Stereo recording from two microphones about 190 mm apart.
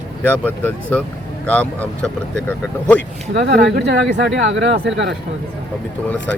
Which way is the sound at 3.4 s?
65° right (ahead or behind).